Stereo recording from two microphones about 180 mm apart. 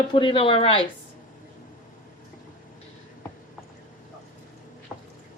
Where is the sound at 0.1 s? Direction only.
30° left (ahead or behind).